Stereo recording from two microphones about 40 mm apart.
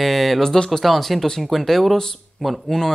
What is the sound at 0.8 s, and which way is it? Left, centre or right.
Speech, centre.